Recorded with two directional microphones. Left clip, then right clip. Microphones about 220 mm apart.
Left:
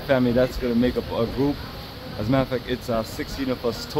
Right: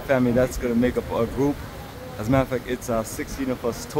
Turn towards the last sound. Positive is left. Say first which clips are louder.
# left 1 dB
turn(degrees=10)  # may be behind; listen again after turning